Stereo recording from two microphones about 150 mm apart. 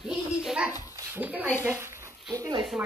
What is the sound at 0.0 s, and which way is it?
Dog, 5° right (ahead or behind).